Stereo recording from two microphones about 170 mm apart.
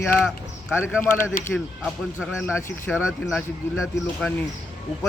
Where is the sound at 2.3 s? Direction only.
15° left (ahead or behind).